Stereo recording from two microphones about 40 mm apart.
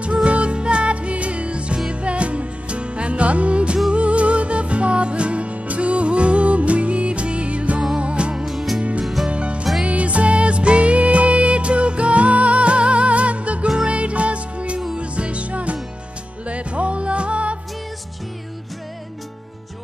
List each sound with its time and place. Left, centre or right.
0.0 s music: right
8.5 s music: centre
9.3 s music: right